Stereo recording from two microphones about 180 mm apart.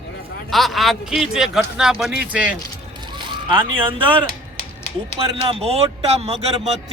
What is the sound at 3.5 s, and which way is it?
Speech, 30° right (ahead or behind).